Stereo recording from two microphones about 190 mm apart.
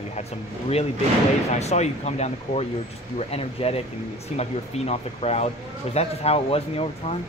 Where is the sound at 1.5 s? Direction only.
35° left (ahead or behind).